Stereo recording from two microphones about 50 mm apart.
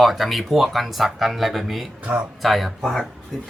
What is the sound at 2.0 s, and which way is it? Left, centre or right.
Speech, right.